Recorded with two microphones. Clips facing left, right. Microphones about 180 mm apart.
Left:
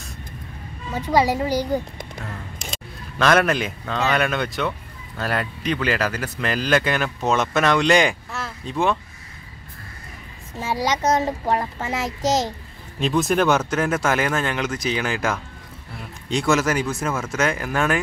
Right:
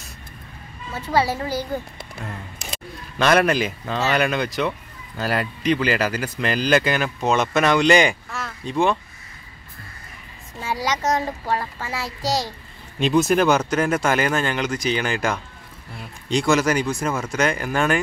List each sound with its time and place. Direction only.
0.9 s speech: 15° left (ahead or behind)
3.2 s speech: centre (ahead or behind)
11.0 s a child's voice: 20° left (ahead or behind)
13.0 s speech: centre (ahead or behind)